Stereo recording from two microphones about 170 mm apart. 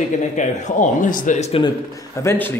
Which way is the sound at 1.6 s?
20° left (ahead or behind).